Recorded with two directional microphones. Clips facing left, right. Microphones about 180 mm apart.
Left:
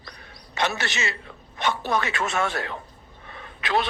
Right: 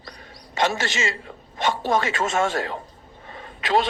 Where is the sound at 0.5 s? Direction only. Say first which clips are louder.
Right 4 dB; 45° right (ahead or behind).